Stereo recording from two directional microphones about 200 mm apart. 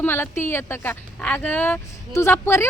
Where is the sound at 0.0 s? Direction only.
10° left (ahead or behind).